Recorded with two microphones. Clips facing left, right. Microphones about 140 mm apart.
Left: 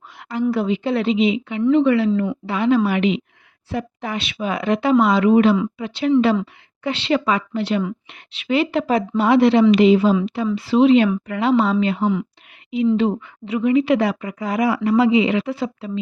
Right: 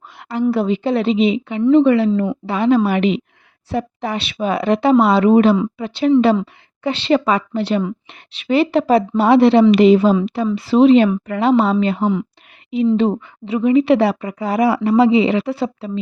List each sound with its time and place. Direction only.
0.2 s a woman's voice: 30° right (ahead or behind)
9.8 s a woman's voice: 40° right (ahead or behind)
12.7 s a woman's voice: 30° right (ahead or behind)